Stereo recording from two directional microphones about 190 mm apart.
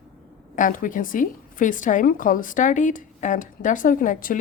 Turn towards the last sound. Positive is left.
turn(degrees=45)  # may be behind; listen again after turning